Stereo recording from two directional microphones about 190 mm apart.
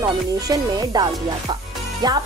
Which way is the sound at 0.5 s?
20° right (ahead or behind).